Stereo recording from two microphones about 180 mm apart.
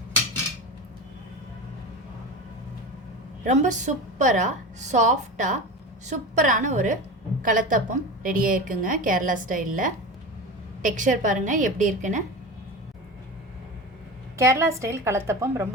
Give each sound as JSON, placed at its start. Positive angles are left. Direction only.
{"t": 3.4, "sound": "a woman's voice", "side_deg": -45}
{"t": 14.3, "sound": "a woman's voice", "side_deg": -15}